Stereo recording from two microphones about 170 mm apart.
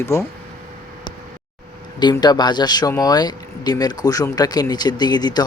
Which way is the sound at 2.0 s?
25° left (ahead or behind).